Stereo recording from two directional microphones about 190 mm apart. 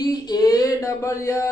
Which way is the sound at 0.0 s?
20° left (ahead or behind).